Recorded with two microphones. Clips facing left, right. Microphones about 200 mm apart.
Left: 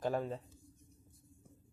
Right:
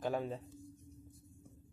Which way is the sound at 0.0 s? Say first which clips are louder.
Left 1 dB; 5° right (ahead or behind).